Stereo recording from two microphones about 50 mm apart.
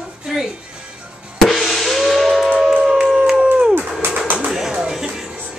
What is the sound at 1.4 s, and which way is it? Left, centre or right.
Drum, centre.